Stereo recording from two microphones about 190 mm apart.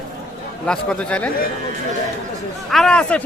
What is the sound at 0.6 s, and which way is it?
Speech, 5° left (ahead or behind).